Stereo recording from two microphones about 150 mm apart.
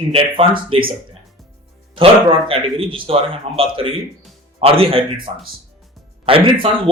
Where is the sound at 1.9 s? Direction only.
40° right (ahead or behind).